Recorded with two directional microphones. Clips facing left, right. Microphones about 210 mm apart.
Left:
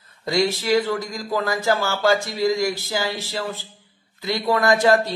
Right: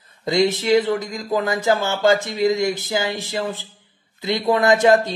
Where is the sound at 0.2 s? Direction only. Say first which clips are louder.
Right 3 dB; 20° right (ahead or behind).